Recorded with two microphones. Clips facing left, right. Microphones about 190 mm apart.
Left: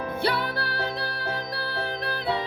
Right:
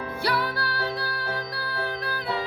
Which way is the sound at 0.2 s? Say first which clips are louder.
Right 1 dB; 25° left (ahead or behind).